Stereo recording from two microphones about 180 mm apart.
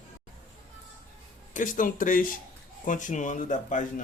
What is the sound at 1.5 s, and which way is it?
A man's voice, 45° left (ahead or behind).